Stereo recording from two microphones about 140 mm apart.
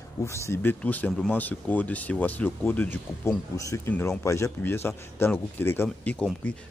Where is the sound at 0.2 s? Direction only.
20° left (ahead or behind).